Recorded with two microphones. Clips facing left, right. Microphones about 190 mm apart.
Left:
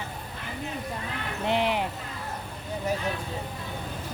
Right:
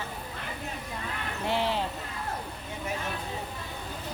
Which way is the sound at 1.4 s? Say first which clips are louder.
Left 3 dB; 20° left (ahead or behind).